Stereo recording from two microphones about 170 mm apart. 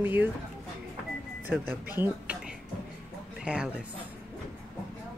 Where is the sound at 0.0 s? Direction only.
10° right (ahead or behind).